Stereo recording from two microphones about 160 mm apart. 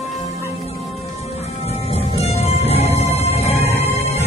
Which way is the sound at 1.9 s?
40° left (ahead or behind).